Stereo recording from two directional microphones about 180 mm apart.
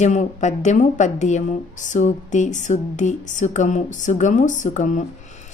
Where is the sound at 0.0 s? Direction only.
40° left (ahead or behind).